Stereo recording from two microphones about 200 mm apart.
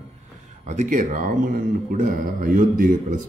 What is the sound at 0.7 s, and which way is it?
A man's voice, 40° right (ahead or behind).